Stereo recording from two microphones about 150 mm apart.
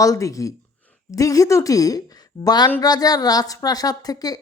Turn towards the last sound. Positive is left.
turn(degrees=25)  # may be behind; listen again after turning